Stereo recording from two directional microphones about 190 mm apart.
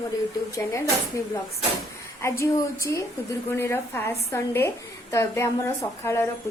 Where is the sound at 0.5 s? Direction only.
15° left (ahead or behind).